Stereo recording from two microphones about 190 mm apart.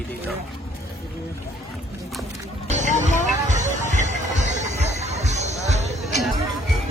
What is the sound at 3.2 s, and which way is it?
Music, 40° right (ahead or behind).